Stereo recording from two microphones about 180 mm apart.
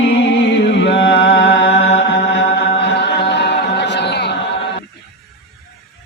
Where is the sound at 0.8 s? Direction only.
80° left.